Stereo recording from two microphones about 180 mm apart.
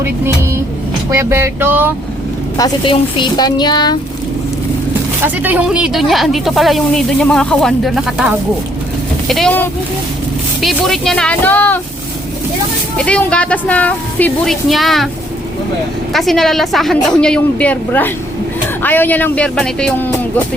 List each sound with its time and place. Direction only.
1.1 s music: 15° right (ahead or behind)
2.6 s speech: 25° left (ahead or behind)
5.2 s speech: 10° right (ahead or behind); by 11.8 s 10° left (ahead or behind)
13.0 s a woman's voice: 5° left (ahead or behind)
16.1 s a woman's voice: centre (ahead or behind)